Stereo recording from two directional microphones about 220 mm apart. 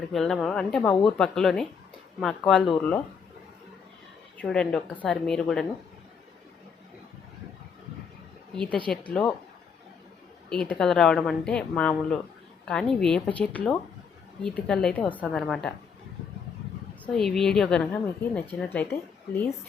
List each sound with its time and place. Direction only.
0.1 s a woman's voice: centre (ahead or behind)
4.4 s a woman's voice: 5° left (ahead or behind)
8.5 s a woman's voice: 5° left (ahead or behind)
10.5 s a woman's voice: 5° left (ahead or behind)
17.1 s a woman's voice: centre (ahead or behind)